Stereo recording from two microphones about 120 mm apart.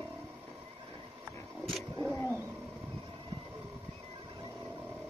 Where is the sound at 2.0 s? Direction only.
20° left (ahead or behind).